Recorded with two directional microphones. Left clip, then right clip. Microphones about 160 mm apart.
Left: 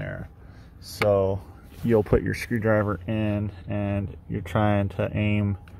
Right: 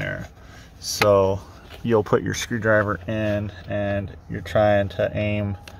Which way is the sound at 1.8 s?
5° right (ahead or behind).